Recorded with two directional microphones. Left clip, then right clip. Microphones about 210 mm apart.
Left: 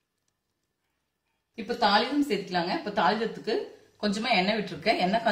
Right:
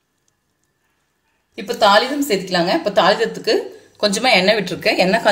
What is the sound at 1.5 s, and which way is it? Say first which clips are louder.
A woman's voice: right 11 dB; 45° right (ahead or behind).